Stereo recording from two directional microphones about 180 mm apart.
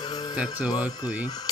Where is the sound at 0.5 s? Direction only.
10° right (ahead or behind).